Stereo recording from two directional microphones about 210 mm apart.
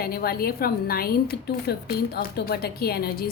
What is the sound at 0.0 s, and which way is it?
A woman's voice, 45° left (ahead or behind).